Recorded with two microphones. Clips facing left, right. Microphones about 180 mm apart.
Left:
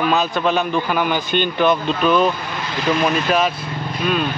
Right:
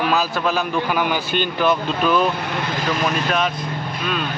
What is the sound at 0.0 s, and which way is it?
Speech, 5° right (ahead or behind).